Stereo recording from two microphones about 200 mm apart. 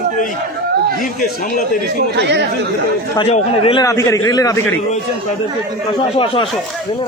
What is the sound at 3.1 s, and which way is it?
Speech, 30° left (ahead or behind).